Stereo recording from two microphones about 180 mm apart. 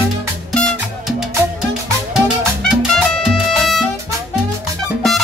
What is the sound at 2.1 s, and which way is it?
Music, centre (ahead or behind).